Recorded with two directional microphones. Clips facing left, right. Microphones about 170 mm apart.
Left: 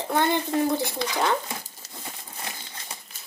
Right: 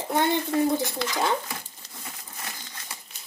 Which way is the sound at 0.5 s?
15° left (ahead or behind).